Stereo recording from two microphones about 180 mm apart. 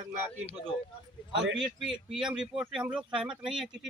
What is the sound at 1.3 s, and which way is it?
Speech, 90° right.